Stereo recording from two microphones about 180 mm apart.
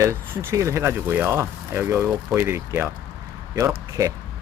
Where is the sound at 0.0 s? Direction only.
15° right (ahead or behind).